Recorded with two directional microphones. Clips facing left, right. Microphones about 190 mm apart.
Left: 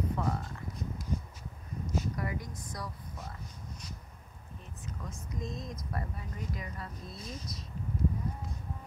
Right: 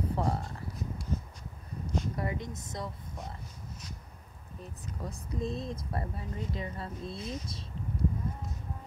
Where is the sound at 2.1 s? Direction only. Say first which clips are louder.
Right 2 dB; 25° right (ahead or behind).